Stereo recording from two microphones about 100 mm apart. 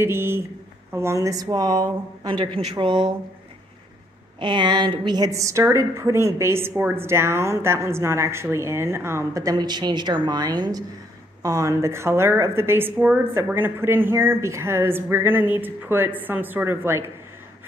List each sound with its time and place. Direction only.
0.0 s a sound: 25° right (ahead or behind)
0.9 s speech: 30° right (ahead or behind); by 3.1 s 55° right (ahead or behind)
4.4 s a woman's voice: 50° right (ahead or behind)
11.4 s a woman's voice: 35° right (ahead or behind)